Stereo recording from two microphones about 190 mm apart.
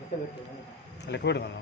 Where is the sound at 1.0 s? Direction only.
65° left (ahead or behind).